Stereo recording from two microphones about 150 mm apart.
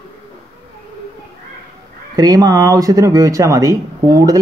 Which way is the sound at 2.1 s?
25° right (ahead or behind).